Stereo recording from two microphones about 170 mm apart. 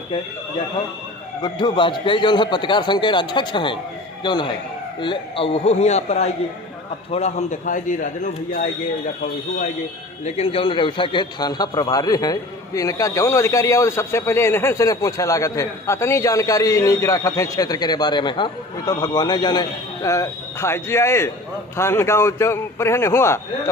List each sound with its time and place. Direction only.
1.4 s a man's voice: 25° left (ahead or behind); by 8.6 s 50° left (ahead or behind)
10.2 s a man's voice: 35° left (ahead or behind); by 23.4 s 15° left (ahead or behind)